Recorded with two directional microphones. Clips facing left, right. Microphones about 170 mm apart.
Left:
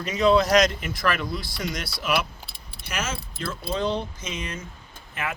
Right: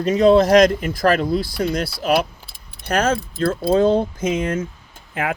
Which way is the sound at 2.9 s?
55° right (ahead or behind).